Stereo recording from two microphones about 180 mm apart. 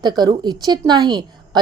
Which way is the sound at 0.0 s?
25° right (ahead or behind).